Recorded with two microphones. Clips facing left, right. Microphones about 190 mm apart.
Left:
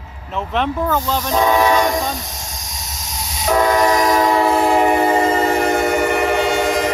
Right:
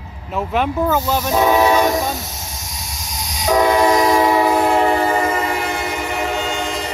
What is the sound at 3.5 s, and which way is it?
Train, 10° right (ahead or behind).